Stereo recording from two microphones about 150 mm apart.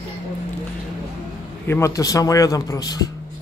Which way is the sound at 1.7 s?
20° left (ahead or behind).